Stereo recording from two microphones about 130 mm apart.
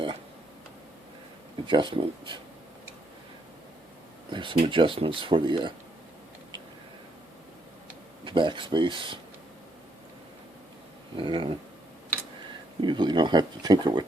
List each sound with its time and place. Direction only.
1.6 s speech: 40° right (ahead or behind)
4.3 s speech: 40° right (ahead or behind)
8.2 s speech: 40° right (ahead or behind)
11.2 s speech: 40° right (ahead or behind)
12.8 s speech: 35° right (ahead or behind)